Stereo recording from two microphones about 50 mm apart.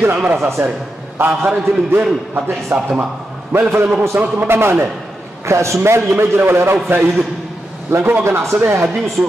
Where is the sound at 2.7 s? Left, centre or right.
Right.